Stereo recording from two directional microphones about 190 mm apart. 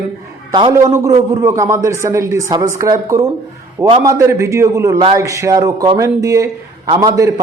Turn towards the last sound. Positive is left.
turn(degrees=-20)  # may be behind; listen again after turning